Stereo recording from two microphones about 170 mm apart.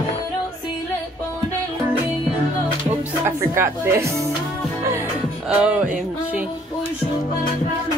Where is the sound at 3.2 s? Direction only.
15° right (ahead or behind).